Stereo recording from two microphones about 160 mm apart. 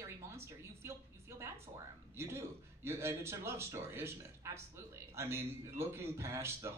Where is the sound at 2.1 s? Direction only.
15° right (ahead or behind).